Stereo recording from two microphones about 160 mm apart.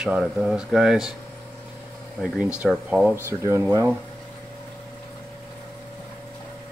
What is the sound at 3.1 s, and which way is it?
Speech, 15° right (ahead or behind).